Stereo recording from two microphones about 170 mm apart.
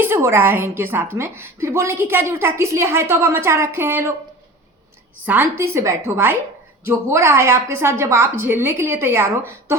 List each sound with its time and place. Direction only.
0.0 s a woman's voice: 15° right (ahead or behind)
5.2 s a woman's voice: 10° right (ahead or behind)